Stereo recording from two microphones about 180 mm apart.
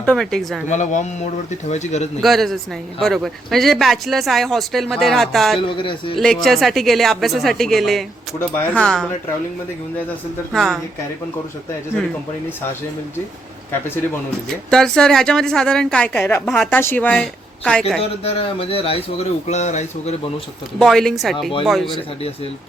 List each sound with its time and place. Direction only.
0.0 s speech: 5° left (ahead or behind)
0.7 s a man's voice: 40° left (ahead or behind)
2.2 s speech: centre (ahead or behind)
5.5 s speech: 25° left (ahead or behind)
6.1 s speech: centre (ahead or behind)
10.5 s speech: centre (ahead or behind)
14.7 s a woman's voice: 5° left (ahead or behind)
18.2 s a man's voice: 35° left (ahead or behind)
20.7 s speech: centre (ahead or behind)